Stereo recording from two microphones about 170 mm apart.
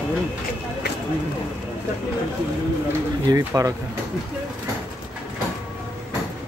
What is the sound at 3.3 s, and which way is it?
Speech, 20° right (ahead or behind).